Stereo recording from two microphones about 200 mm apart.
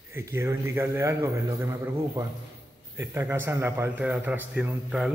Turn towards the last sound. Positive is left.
turn(degrees=-5)  # may be behind; listen again after turning